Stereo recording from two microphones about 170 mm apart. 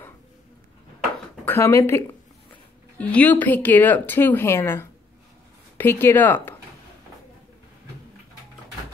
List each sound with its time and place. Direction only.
1.4 s speech: 15° left (ahead or behind)